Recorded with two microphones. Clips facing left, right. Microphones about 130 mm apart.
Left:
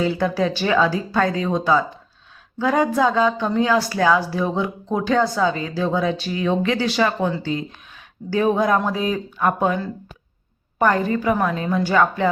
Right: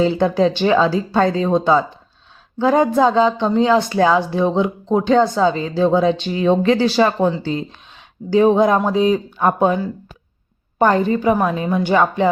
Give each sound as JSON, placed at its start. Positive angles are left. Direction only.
{"t": 0.0, "sound": "speech", "side_deg": -25}